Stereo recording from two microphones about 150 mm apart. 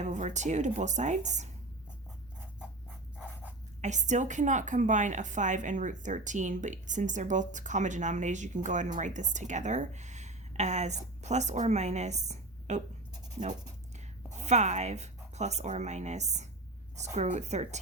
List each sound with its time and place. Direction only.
0.0 s speech: 55° right (ahead or behind)
3.8 s a woman's voice: 50° right (ahead or behind)
14.4 s speech: 50° right (ahead or behind)